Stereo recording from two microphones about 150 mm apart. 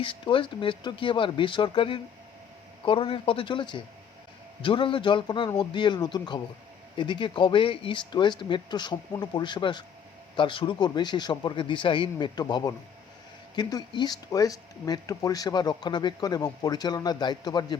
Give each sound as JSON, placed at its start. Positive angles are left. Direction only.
{"t": 0.0, "sound": "speech", "side_deg": 35}